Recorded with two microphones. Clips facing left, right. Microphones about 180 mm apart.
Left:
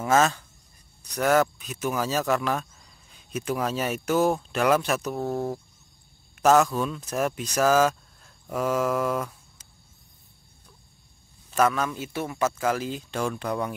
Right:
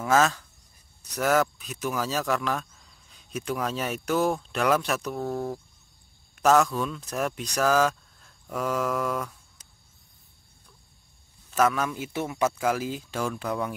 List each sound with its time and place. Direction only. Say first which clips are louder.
0.2 s speech: left 1 dB; centre (ahead or behind)
5.2 s speech: left 2 dB; 25° left (ahead or behind)
6.4 s speech: left 2 dB; centre (ahead or behind)
11.5 s a man's voice: left 1 dB; 5° right (ahead or behind)